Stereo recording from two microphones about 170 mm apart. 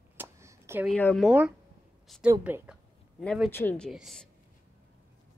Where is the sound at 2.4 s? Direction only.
10° right (ahead or behind).